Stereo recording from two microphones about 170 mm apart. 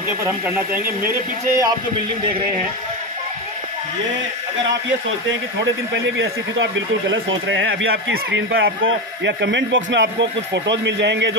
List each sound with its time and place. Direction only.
1.0 s speech: 15° right (ahead or behind)
6.6 s speech: 90° right
9.2 s speech: 90° right